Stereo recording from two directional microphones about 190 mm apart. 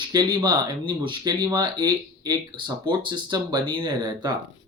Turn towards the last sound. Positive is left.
turn(degrees=-20)  # may be behind; listen again after turning